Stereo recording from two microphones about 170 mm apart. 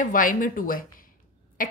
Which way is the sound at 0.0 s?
55° left (ahead or behind).